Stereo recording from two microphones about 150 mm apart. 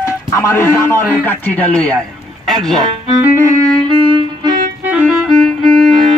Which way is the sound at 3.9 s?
35° right (ahead or behind).